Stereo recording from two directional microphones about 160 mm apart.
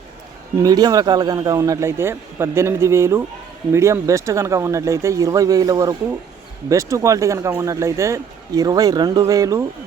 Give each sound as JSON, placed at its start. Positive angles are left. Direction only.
{"t": 0.5, "sound": "speech", "side_deg": -20}